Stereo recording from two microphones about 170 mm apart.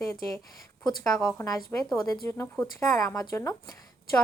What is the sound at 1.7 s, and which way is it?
A woman's voice, 10° left (ahead or behind).